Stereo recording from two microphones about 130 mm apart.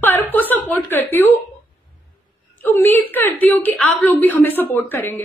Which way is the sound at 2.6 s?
15° left (ahead or behind).